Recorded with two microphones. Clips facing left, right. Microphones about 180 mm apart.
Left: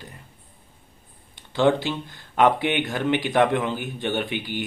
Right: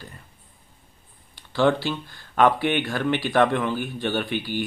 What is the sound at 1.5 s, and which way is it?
Speech, 20° left (ahead or behind).